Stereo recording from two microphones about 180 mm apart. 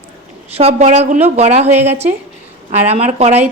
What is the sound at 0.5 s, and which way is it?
A woman's voice, 40° right (ahead or behind).